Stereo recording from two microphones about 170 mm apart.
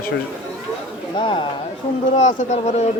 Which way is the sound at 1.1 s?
30° left (ahead or behind).